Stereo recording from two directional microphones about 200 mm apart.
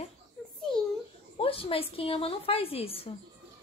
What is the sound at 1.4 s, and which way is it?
A woman's voice, 30° left (ahead or behind).